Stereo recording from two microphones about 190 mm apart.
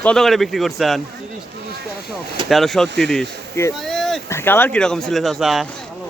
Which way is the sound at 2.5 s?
Centre (ahead or behind).